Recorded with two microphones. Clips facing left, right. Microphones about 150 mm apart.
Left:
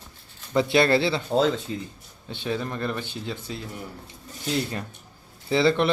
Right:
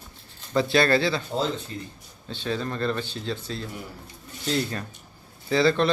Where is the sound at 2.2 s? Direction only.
15° left (ahead or behind).